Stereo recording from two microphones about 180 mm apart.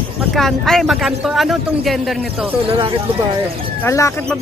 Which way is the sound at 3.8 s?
15° left (ahead or behind).